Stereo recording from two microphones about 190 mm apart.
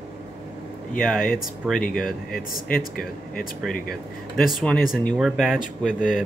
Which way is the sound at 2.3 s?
50° left (ahead or behind).